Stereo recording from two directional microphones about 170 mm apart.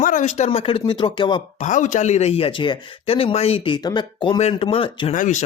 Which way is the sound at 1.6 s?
45° left (ahead or behind).